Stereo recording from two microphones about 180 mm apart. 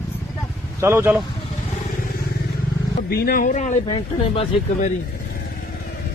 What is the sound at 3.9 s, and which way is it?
Speech, 30° left (ahead or behind).